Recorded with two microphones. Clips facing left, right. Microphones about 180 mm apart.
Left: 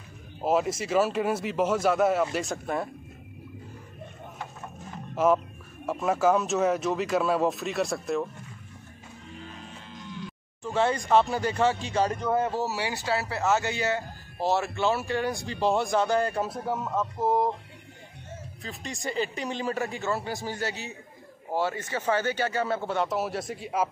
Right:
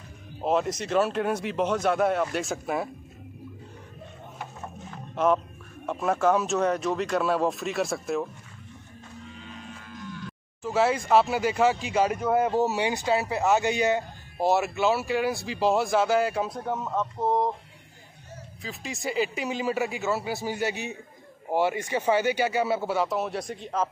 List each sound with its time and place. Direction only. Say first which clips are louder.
0.4 s speech: even; 5° left (ahead or behind)
5.1 s speech: left 1 dB; 5° left (ahead or behind)
10.6 s speech: right 2 dB; 5° right (ahead or behind)
18.6 s speech: right 2 dB; 5° right (ahead or behind)